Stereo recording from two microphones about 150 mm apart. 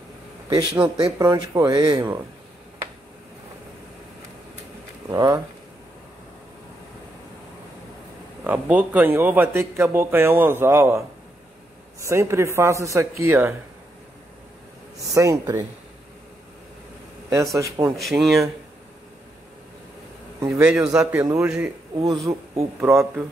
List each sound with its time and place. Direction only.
0.5 s speech: 25° right (ahead or behind)
5.1 s speech: 25° right (ahead or behind)
8.5 s a man's voice: 10° right (ahead or behind)
15.0 s speech: 20° right (ahead or behind)
17.3 s speech: 20° right (ahead or behind)
17.9 s speech: centre (ahead or behind)
20.3 s a man's voice: 20° right (ahead or behind)
21.9 s speech: 35° right (ahead or behind)
22.2 s speech: 20° right (ahead or behind)